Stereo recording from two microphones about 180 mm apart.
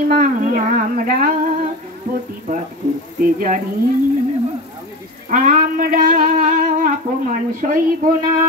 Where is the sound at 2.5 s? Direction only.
50° right (ahead or behind).